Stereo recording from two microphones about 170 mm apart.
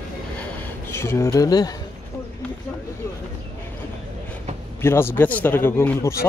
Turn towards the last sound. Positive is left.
turn(degrees=15)  # may be behind; listen again after turning